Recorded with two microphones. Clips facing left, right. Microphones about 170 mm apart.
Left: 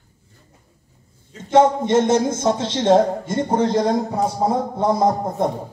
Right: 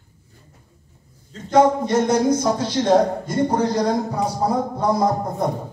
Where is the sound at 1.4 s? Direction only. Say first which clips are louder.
Left 1 dB; 25° left (ahead or behind).